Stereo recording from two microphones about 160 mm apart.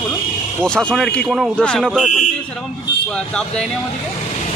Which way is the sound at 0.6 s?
5° left (ahead or behind).